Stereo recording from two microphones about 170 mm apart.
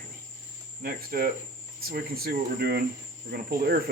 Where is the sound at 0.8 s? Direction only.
60° right (ahead or behind).